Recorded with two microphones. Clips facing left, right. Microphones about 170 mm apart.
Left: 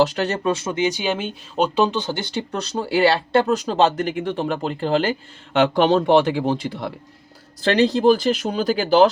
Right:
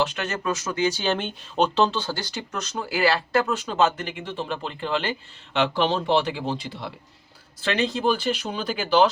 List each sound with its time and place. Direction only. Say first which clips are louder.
0.0 s speech: left 7 dB; 35° left (ahead or behind)
7.6 s speech: left 7 dB; 35° left (ahead or behind)